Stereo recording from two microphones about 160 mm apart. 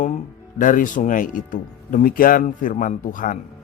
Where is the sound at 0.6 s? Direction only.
55° left (ahead or behind).